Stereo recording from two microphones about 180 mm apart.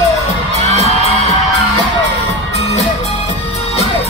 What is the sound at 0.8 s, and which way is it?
Music, 35° left (ahead or behind).